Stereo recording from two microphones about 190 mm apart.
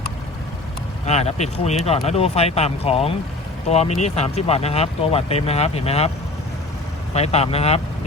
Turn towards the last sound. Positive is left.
turn(degrees=35)  # may be behind; listen again after turning